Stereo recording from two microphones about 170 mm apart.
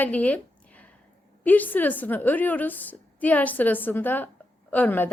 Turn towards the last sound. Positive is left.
turn(degrees=10)  # may be behind; listen again after turning